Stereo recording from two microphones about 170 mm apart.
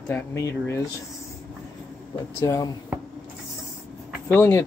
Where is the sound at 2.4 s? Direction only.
20° left (ahead or behind).